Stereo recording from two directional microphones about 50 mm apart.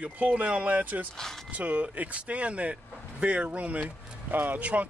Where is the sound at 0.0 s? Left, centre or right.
Right.